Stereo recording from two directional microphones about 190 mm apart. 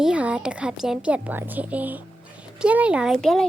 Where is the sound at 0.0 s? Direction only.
5° right (ahead or behind).